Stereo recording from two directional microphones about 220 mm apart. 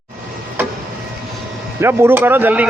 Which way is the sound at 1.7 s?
10° right (ahead or behind).